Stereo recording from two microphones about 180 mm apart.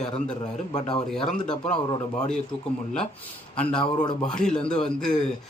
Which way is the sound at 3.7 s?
25° left (ahead or behind).